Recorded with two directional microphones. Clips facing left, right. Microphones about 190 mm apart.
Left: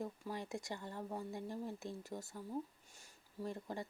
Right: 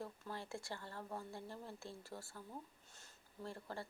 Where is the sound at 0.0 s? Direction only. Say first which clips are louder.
Left 4 dB; 15° left (ahead or behind).